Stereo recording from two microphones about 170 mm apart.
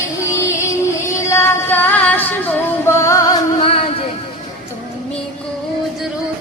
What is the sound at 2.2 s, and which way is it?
Music, 10° left (ahead or behind).